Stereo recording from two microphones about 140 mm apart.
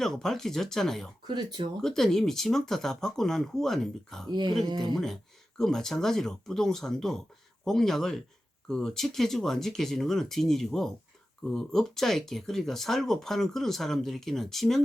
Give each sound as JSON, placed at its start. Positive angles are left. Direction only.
{"t": 0.0, "sound": "speech", "side_deg": 5}
{"t": 1.3, "sound": "speech", "side_deg": -30}
{"t": 1.8, "sound": "speech", "side_deg": 5}
{"t": 4.3, "sound": "speech", "side_deg": -30}
{"t": 5.5, "sound": "speech", "side_deg": 5}